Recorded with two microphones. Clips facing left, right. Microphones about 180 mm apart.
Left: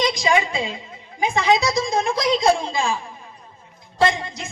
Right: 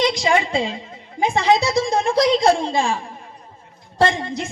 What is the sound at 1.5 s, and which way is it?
Speech, 65° right (ahead or behind).